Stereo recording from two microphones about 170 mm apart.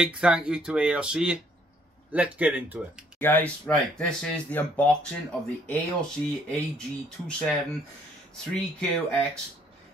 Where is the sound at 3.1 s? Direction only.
10° left (ahead or behind).